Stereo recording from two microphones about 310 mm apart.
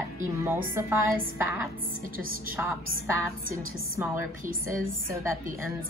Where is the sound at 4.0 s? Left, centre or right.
Centre.